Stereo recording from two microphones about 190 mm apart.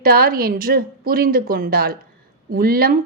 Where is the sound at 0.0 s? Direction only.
50° right (ahead or behind).